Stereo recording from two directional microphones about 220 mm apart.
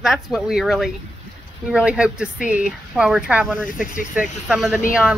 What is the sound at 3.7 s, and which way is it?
Speech, 40° left (ahead or behind).